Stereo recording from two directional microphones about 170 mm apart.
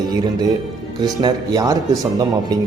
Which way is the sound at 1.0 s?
25° right (ahead or behind).